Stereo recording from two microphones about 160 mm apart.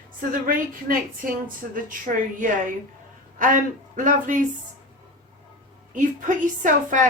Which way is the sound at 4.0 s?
55° right (ahead or behind).